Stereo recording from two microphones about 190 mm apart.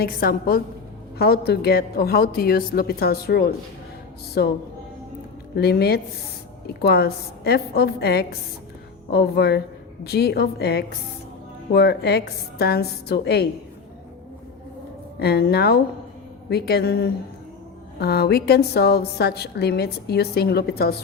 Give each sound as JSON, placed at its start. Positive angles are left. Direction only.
{"t": 0.0, "sound": "a woman's voice", "side_deg": 50}
{"t": 5.5, "sound": "a woman's voice", "side_deg": 55}
{"t": 15.2, "sound": "a woman's voice", "side_deg": 60}